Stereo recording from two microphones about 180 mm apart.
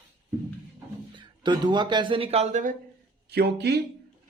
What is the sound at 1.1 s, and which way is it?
Speech, 25° right (ahead or behind).